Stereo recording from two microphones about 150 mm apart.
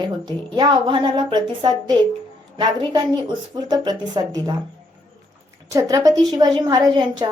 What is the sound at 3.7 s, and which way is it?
Speech, 30° right (ahead or behind).